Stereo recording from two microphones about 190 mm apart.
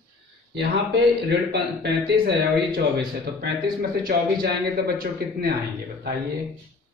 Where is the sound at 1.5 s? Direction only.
60° right (ahead or behind).